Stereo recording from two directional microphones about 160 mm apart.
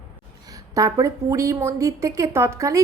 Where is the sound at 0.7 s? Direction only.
20° right (ahead or behind).